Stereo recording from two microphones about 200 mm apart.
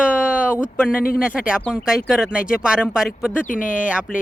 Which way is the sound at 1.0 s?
45° left (ahead or behind).